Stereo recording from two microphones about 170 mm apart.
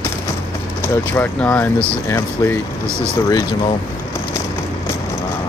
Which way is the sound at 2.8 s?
15° right (ahead or behind).